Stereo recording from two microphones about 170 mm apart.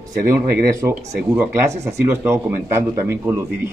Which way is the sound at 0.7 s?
15° right (ahead or behind).